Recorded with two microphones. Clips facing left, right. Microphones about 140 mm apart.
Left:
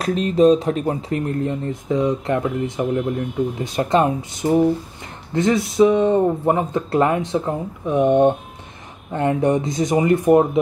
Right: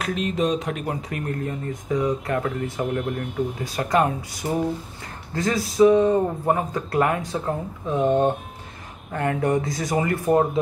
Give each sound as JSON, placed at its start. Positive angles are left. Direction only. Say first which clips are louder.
{"t": 0.0, "sound": "speech", "louder": "left 8 dB", "side_deg": 35}